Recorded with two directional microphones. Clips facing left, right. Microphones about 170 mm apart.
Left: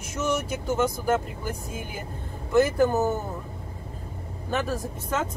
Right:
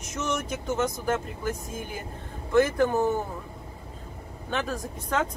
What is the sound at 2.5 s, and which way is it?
Speech, 5° left (ahead or behind).